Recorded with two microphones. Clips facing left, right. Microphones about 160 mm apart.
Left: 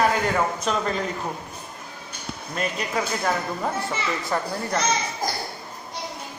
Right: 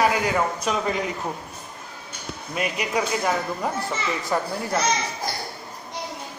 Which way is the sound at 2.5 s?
10° right (ahead or behind).